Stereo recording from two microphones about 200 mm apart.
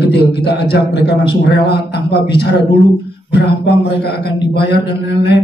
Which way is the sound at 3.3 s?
55° left (ahead or behind).